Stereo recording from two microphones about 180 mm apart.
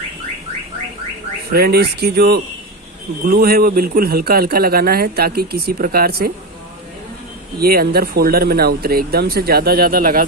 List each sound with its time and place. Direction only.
1.5 s a man's voice: 60° right (ahead or behind)
7.5 s a man's voice: 60° right (ahead or behind)